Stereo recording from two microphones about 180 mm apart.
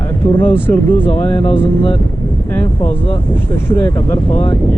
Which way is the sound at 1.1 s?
30° left (ahead or behind).